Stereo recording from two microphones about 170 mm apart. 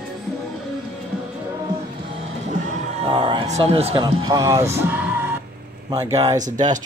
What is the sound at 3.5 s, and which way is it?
Speech, 35° right (ahead or behind).